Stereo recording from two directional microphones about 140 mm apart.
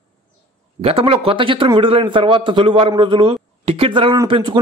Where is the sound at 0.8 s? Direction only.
40° right (ahead or behind).